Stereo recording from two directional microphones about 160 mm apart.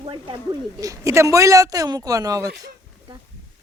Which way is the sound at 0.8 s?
20° right (ahead or behind).